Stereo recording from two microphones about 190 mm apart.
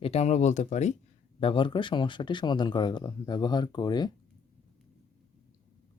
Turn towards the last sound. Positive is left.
turn(degrees=20)  # may be behind; listen again after turning